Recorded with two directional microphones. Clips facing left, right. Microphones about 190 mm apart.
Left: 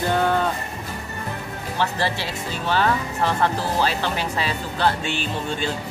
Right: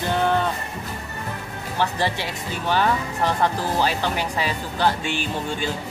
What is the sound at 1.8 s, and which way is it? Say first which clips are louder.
Speech: right 1 dB; 15° right (ahead or behind).